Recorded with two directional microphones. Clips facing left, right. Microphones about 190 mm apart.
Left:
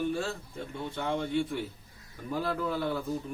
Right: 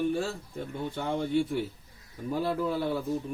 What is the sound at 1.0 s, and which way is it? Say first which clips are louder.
Speech: right 2 dB; 40° right (ahead or behind).